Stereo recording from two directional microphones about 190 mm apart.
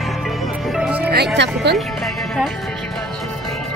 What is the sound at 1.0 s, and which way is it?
Speech, 60° right (ahead or behind).